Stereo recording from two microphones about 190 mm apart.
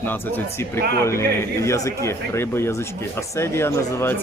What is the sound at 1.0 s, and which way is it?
Speech, 15° left (ahead or behind).